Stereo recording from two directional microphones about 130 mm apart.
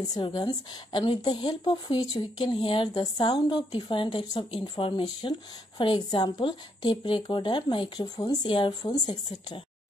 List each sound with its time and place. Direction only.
0.1 s a woman's voice: 30° left (ahead or behind)